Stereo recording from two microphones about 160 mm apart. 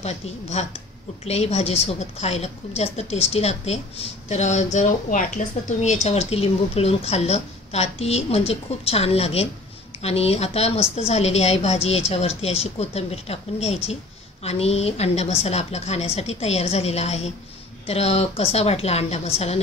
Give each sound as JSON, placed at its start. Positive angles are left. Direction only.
{"t": 0.0, "sound": "speech", "side_deg": 45}